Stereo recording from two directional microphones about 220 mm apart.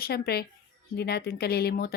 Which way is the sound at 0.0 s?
45° left (ahead or behind).